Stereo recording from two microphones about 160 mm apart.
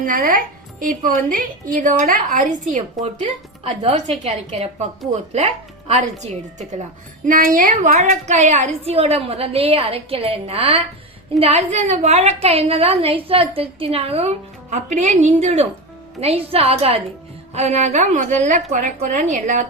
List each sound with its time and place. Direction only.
0.0 s a woman's voice: 60° right (ahead or behind)
7.3 s a woman's voice: 60° right (ahead or behind)